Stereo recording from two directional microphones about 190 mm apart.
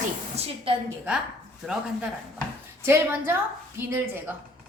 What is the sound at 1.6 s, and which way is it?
Speech, centre (ahead or behind).